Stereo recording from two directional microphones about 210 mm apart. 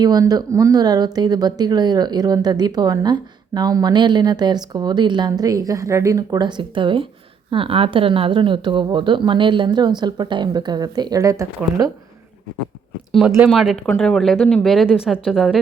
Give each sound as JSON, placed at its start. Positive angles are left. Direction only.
{"t": 0.0, "sound": "speech", "side_deg": -20}
{"t": 13.1, "sound": "speech", "side_deg": 0}